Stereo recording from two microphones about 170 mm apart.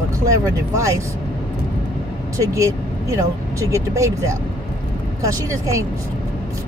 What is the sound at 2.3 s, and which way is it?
Speech, 20° right (ahead or behind).